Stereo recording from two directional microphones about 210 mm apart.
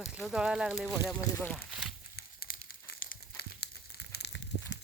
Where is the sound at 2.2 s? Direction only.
50° left (ahead or behind).